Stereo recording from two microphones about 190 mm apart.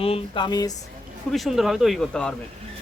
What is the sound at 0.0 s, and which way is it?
Speech, 25° left (ahead or behind).